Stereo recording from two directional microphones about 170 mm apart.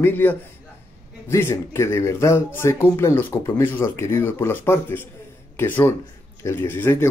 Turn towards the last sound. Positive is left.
turn(degrees=15)  # may be behind; listen again after turning